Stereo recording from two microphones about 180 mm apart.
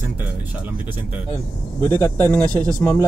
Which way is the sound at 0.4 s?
10° right (ahead or behind).